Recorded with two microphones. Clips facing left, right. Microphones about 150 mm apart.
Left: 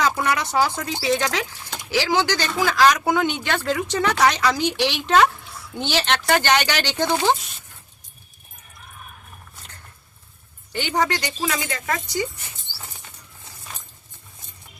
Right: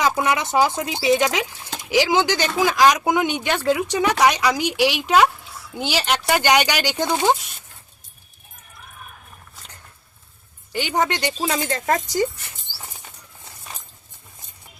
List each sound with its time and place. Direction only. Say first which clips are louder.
0.0 s speech: right 1 dB; 20° right (ahead or behind)
10.8 s speech: right 1 dB; 15° right (ahead or behind); by 12.3 s 40° right (ahead or behind)